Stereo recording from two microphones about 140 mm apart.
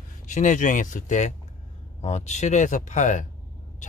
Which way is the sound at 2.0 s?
50° left (ahead or behind).